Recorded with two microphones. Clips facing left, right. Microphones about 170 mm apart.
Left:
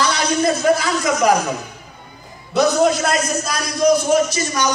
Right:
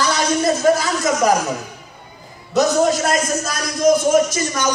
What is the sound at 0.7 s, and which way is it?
Speech, 40° right (ahead or behind).